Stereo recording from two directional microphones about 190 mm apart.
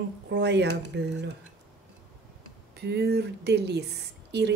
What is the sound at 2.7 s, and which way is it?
Speech, 60° right (ahead or behind).